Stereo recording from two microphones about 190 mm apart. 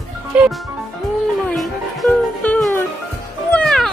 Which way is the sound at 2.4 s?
5° left (ahead or behind).